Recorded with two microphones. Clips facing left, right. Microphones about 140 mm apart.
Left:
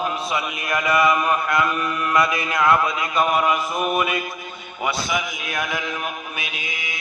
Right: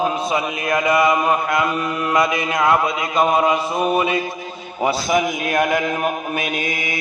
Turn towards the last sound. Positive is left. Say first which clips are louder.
# right 9 dB
turn(degrees=-55)  # may be behind; listen again after turning